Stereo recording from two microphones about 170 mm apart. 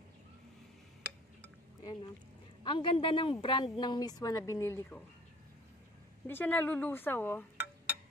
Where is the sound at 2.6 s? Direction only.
30° left (ahead or behind).